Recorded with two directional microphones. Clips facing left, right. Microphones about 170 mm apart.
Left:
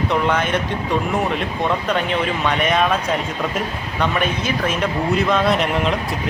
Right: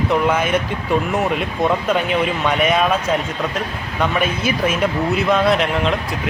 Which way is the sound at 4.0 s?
5° right (ahead or behind).